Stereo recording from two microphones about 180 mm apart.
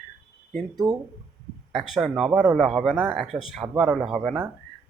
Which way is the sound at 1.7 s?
Centre (ahead or behind).